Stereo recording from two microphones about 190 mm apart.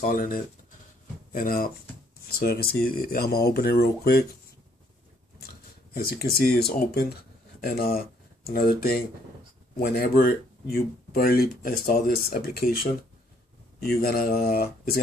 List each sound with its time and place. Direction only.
0.0 s speech: 50° left (ahead or behind)
6.0 s speech: 55° left (ahead or behind)